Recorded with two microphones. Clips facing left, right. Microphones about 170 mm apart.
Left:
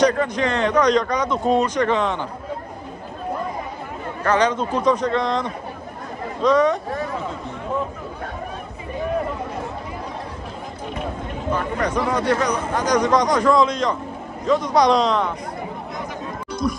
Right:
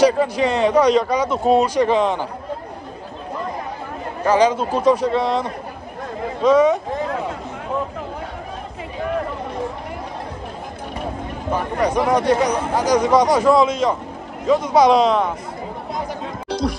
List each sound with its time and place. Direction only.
0.0 s speech: 10° right (ahead or behind)
4.2 s speech: 10° right (ahead or behind)
11.5 s speech: 10° right (ahead or behind)
16.4 s a sound: 75° right (ahead or behind)